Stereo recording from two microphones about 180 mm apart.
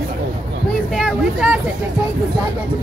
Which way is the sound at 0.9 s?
5° right (ahead or behind).